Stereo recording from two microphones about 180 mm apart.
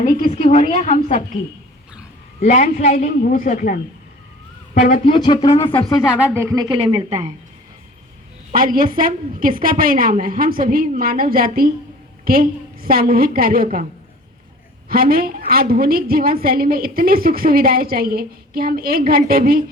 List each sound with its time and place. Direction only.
0.1 s a woman's voice: 45° left (ahead or behind)
2.4 s a man's voice: 45° left (ahead or behind)
5.0 s speech: 25° left (ahead or behind)
5.7 s a woman's voice: centre (ahead or behind); by 7.3 s 35° right (ahead or behind)
8.5 s a woman's voice: 50° right (ahead or behind)
14.8 s a woman's voice: 55° right (ahead or behind)